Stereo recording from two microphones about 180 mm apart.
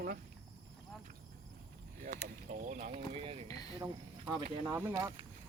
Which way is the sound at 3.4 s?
20° left (ahead or behind).